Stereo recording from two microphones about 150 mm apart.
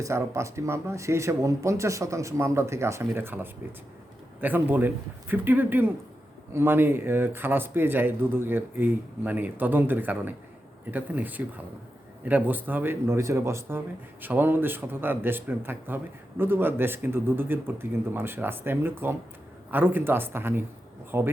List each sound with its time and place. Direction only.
0.0 s speech: 20° right (ahead or behind)